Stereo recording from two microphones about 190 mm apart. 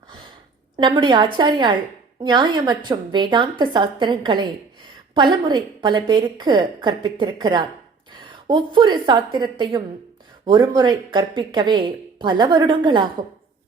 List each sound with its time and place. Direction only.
0.8 s a woman's voice: 25° right (ahead or behind)